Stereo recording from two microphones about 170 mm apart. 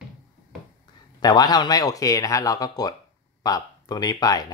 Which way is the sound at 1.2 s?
25° left (ahead or behind).